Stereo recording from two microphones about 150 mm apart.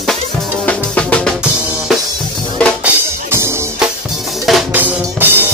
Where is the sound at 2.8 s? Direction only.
15° right (ahead or behind).